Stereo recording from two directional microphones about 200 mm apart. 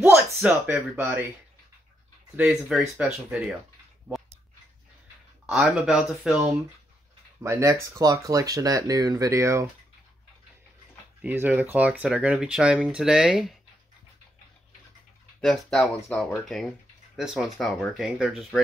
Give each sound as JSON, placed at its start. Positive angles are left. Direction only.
{"t": 0.0, "sound": "speech", "side_deg": -10}
{"t": 2.3, "sound": "speech", "side_deg": -5}
{"t": 5.5, "sound": "speech", "side_deg": 0}
{"t": 7.4, "sound": "speech", "side_deg": -15}
{"t": 11.2, "sound": "speech", "side_deg": -10}
{"t": 15.4, "sound": "speech", "side_deg": 0}